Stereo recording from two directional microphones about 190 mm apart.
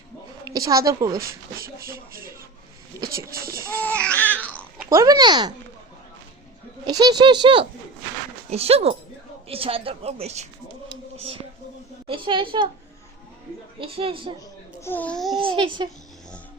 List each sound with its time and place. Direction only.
0.4 s a woman's voice: 20° right (ahead or behind)
1.5 s speech: 50° right (ahead or behind)
3.8 s baby cry: 5° left (ahead or behind)
4.9 s speech: 20° right (ahead or behind)
6.8 s speech: 20° right (ahead or behind)
10.8 s a sound: 30° right (ahead or behind)
12.0 s speech: 25° right (ahead or behind)
13.7 s speech: 30° right (ahead or behind)
14.8 s speech: 10° left (ahead or behind)
15.4 s speech: 25° right (ahead or behind)